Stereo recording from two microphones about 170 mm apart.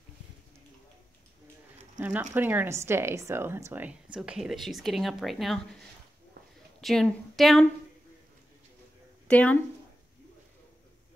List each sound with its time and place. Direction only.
2.0 s a sound: 10° right (ahead or behind)
2.3 s speech: 10° right (ahead or behind)
6.8 s a woman's voice: centre (ahead or behind)
9.3 s speech: 10° left (ahead or behind)